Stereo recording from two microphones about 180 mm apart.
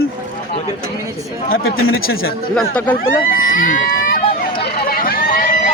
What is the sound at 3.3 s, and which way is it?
Run, 50° left (ahead or behind).